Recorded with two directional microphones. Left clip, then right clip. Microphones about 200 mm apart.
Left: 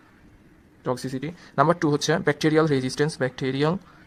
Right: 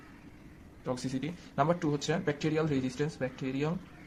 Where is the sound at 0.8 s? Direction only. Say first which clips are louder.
Left 7 dB; 40° left (ahead or behind).